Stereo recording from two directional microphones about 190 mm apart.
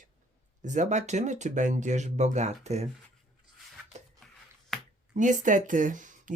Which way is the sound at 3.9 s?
35° right (ahead or behind).